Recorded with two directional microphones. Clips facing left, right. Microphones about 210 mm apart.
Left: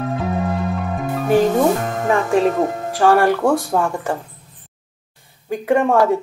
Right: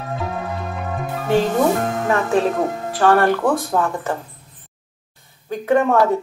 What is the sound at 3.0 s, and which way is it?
A man's voice, 10° left (ahead or behind).